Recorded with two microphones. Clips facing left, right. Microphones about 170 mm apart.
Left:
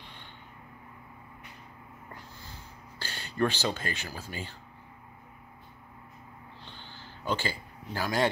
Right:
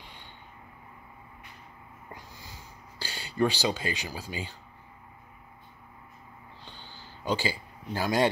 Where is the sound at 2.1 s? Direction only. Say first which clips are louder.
Even; 10° right (ahead or behind).